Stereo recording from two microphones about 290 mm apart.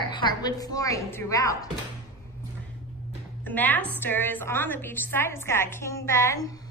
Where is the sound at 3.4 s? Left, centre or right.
Centre.